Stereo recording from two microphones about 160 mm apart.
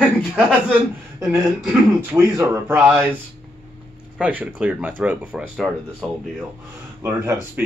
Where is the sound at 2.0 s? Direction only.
15° right (ahead or behind).